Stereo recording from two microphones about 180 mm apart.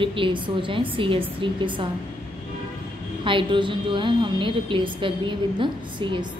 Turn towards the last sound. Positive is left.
turn(degrees=-25)  # may be behind; listen again after turning